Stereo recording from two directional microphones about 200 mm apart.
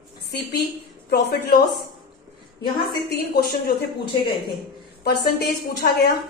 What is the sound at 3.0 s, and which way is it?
Speech, 55° left (ahead or behind).